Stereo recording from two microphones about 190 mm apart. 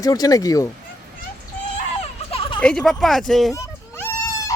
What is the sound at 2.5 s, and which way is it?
Speech, 5° left (ahead or behind).